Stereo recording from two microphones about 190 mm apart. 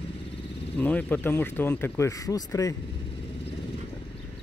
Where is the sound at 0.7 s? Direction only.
10° left (ahead or behind).